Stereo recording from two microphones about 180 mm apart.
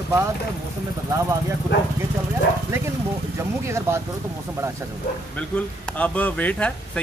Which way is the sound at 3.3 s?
15° right (ahead or behind).